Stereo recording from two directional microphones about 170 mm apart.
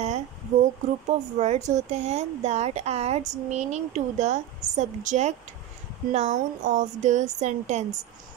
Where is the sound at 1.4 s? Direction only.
40° right (ahead or behind).